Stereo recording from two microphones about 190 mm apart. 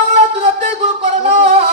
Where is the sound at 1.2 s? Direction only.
35° right (ahead or behind).